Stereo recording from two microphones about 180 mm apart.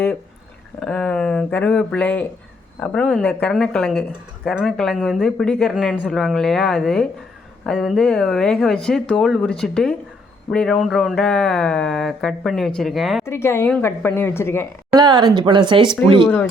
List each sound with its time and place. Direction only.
0.8 s speech: 5° left (ahead or behind)
13.2 s a woman's voice: 15° left (ahead or behind)
14.9 s speech: 25° right (ahead or behind)
16.2 s a woman's voice: 5° left (ahead or behind)